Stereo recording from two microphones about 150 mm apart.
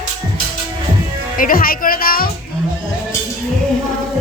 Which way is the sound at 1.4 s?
70° left (ahead or behind).